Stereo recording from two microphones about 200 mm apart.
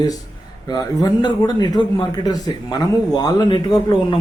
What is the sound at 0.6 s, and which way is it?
A man's voice, 20° left (ahead or behind).